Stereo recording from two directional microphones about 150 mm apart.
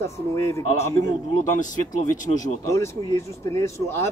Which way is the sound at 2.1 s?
60° left (ahead or behind).